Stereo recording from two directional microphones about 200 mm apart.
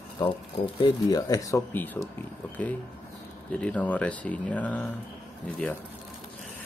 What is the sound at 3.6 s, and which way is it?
A man's voice, 5° left (ahead or behind).